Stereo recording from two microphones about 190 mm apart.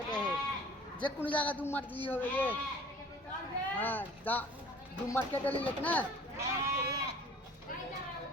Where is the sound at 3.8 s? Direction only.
10° left (ahead or behind).